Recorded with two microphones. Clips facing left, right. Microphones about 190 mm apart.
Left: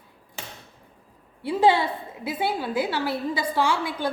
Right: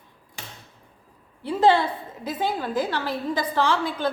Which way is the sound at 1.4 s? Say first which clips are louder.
Right 1 dB; 10° left (ahead or behind).